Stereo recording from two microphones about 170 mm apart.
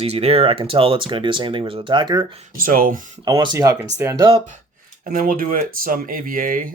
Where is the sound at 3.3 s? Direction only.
25° right (ahead or behind).